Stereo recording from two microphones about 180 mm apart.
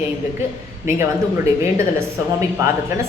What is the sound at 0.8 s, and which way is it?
A woman's voice, 15° right (ahead or behind).